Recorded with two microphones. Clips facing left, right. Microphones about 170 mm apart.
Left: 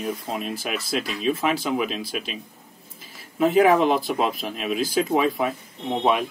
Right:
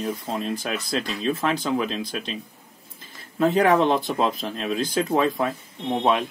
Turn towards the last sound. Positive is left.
turn(degrees=5)  # may be behind; listen again after turning